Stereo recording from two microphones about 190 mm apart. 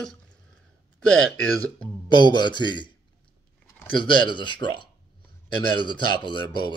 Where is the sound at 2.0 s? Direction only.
25° left (ahead or behind).